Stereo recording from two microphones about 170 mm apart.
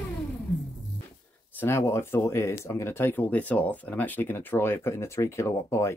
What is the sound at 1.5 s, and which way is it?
Speech, 10° left (ahead or behind).